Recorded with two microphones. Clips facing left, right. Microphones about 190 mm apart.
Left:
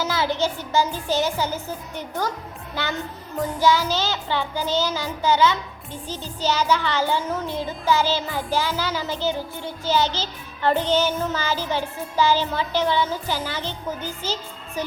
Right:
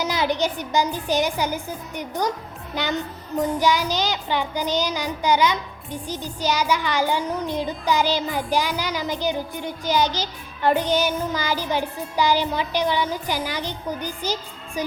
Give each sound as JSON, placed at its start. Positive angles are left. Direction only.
{"t": 0.0, "sound": "music", "side_deg": -15}
{"t": 14.8, "sound": "speech", "side_deg": -15}